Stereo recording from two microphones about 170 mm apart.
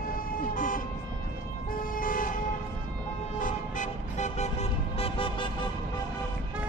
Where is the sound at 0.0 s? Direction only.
55° left (ahead or behind); by 5.7 s 30° left (ahead or behind).